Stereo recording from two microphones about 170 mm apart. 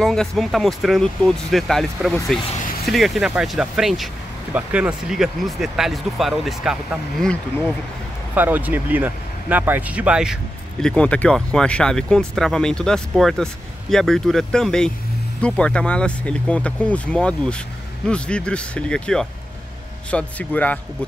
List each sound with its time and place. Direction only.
0.0 s speech: 5° left (ahead or behind)
8.4 s speech: 10° right (ahead or behind); by 20.8 s 10° left (ahead or behind)